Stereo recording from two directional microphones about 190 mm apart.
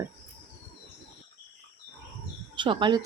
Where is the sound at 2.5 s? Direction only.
25° right (ahead or behind).